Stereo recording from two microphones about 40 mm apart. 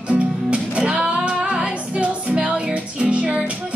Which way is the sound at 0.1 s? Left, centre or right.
Right.